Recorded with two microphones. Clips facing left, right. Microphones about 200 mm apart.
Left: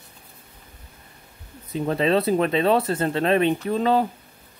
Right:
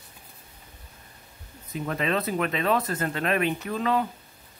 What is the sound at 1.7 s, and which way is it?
Speech, 30° left (ahead or behind).